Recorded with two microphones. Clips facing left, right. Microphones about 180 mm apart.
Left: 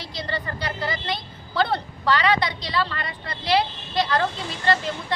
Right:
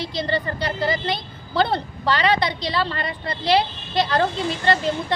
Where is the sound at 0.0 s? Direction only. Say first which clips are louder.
Right 6 dB; 25° right (ahead or behind).